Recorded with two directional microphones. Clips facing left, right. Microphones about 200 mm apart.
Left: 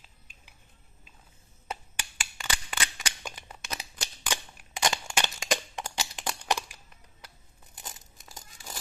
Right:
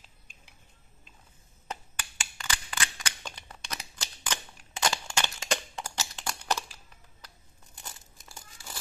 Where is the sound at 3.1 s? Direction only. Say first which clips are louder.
Left 1 dB; 10° left (ahead or behind).